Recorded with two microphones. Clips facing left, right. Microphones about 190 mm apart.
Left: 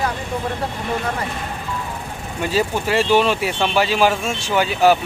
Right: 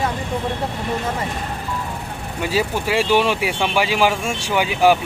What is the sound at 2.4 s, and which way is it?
Speech, 10° right (ahead or behind).